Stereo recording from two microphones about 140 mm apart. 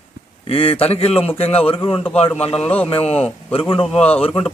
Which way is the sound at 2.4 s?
45° left (ahead or behind).